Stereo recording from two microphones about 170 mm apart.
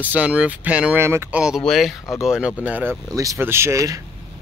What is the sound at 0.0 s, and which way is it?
Speech, 10° right (ahead or behind).